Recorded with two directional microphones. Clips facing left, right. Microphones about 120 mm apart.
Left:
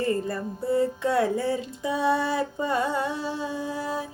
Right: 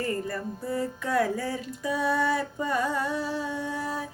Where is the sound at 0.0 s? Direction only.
25° left (ahead or behind).